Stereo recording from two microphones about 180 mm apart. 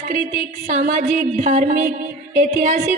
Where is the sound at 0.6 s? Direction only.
40° right (ahead or behind).